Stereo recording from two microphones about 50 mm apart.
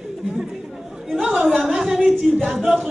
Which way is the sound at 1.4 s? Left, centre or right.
Centre.